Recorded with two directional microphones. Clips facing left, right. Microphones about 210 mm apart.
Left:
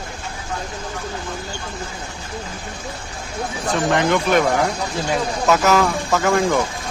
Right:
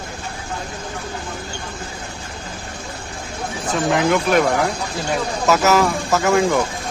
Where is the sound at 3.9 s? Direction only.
5° right (ahead or behind).